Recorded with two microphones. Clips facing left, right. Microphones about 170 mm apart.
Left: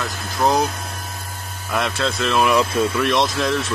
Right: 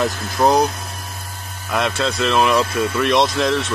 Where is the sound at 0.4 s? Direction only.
20° right (ahead or behind).